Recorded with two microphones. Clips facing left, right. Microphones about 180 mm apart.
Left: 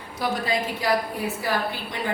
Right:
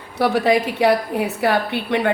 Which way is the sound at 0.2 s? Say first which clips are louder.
Right 9 dB; 70° right (ahead or behind).